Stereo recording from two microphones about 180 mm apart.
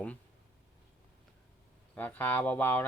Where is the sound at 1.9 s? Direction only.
10° left (ahead or behind).